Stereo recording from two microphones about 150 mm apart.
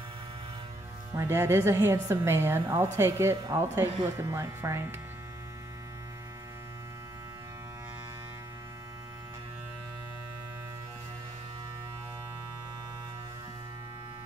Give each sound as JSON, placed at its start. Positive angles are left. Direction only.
{"t": 1.1, "sound": "a woman's voice", "side_deg": -15}